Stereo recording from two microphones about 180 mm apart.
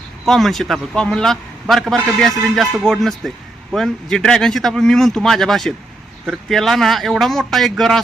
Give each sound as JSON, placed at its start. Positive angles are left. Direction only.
{"t": 0.3, "sound": "a man's voice", "side_deg": 0}